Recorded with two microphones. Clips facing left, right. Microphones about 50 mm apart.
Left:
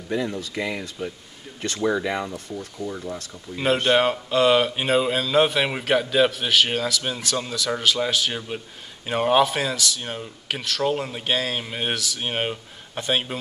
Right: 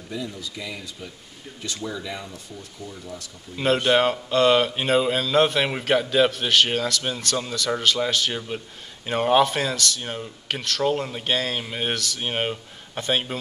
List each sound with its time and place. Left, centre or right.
0.1 s speech: left
3.5 s speech: centre